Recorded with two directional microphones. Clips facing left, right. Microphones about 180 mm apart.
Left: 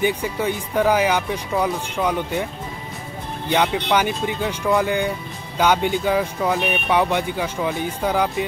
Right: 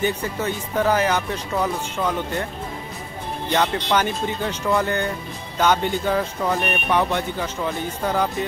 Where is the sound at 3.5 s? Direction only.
10° left (ahead or behind).